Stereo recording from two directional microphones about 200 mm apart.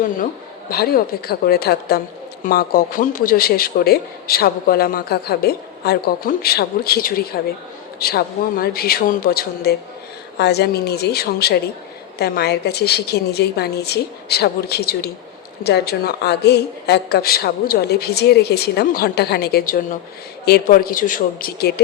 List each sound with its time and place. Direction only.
0.7 s a man's voice: 50° left (ahead or behind)